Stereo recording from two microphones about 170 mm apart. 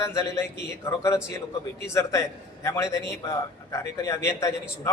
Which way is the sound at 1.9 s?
15° left (ahead or behind).